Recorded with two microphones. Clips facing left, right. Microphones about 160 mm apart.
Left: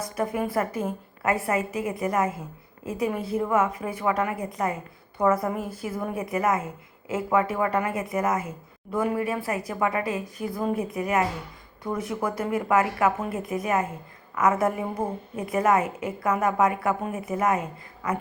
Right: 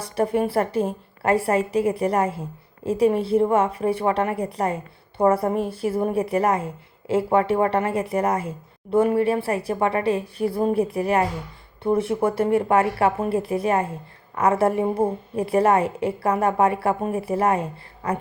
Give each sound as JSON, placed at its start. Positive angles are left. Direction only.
{"t": 0.0, "sound": "a woman's voice", "side_deg": -30}